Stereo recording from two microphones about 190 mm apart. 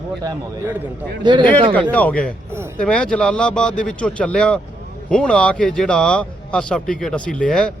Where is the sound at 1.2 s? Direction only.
25° right (ahead or behind).